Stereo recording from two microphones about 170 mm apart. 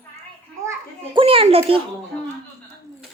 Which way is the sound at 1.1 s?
35° right (ahead or behind).